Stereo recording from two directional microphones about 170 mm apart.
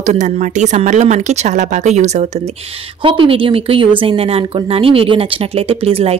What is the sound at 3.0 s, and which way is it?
Speech, 30° right (ahead or behind).